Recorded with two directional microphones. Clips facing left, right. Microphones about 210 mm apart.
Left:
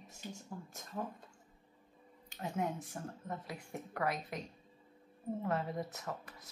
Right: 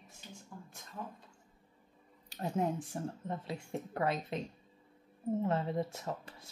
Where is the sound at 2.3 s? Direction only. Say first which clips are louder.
Right 4 dB; 35° right (ahead or behind).